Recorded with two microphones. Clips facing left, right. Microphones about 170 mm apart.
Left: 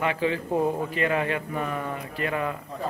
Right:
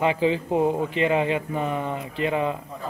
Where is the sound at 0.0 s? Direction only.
25° right (ahead or behind).